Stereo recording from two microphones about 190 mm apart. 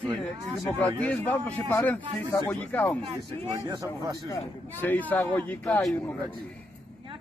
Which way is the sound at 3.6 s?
15° right (ahead or behind).